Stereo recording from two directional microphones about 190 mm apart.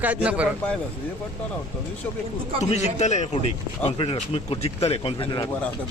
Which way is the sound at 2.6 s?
35° left (ahead or behind).